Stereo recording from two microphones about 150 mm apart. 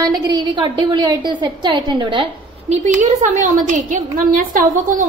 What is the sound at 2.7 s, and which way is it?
A woman's voice, 50° right (ahead or behind).